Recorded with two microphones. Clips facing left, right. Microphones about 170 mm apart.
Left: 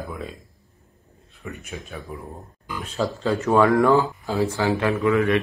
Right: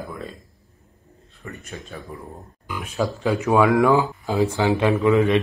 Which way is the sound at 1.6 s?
5° left (ahead or behind).